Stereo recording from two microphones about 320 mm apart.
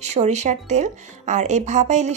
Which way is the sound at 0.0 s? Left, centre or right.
Right.